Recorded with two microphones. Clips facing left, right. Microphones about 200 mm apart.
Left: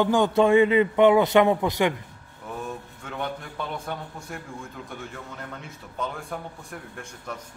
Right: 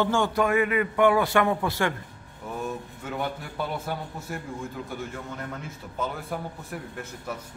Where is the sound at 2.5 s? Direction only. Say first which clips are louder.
Right 3 dB; 5° right (ahead or behind).